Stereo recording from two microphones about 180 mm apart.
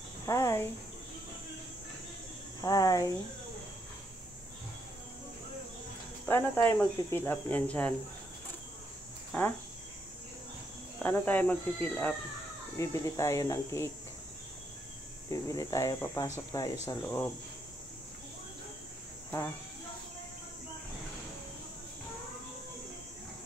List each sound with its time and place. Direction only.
0.3 s speech: 15° left (ahead or behind)
2.6 s speech: 20° left (ahead or behind)
6.2 s speech: 10° left (ahead or behind)
9.3 s speech: 10° left (ahead or behind)
11.0 s speech: 10° left (ahead or behind)
15.2 s speech: 20° left (ahead or behind)